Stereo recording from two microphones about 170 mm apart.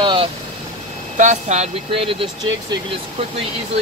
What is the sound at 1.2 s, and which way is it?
Speech, 45° right (ahead or behind).